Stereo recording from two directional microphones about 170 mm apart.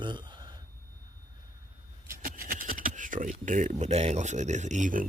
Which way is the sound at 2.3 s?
60° right (ahead or behind).